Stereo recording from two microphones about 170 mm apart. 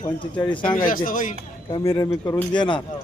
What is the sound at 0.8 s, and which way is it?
Speech, 55° left (ahead or behind).